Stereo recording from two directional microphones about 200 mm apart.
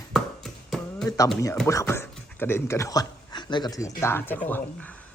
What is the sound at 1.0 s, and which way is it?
Speech, 15° left (ahead or behind).